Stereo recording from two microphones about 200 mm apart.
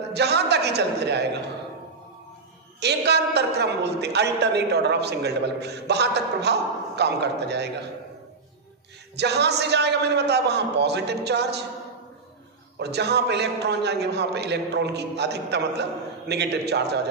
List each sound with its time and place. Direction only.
0.1 s a man's voice: 55° right (ahead or behind)
2.8 s a man's voice: 55° right (ahead or behind)
9.1 s a man's voice: 55° right (ahead or behind)
12.7 s a man's voice: 55° right (ahead or behind)